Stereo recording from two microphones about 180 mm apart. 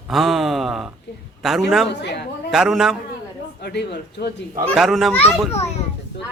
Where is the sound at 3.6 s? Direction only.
65° left (ahead or behind).